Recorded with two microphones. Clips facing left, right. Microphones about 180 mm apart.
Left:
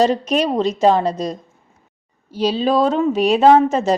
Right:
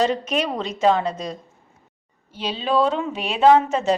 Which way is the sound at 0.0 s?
35° left (ahead or behind).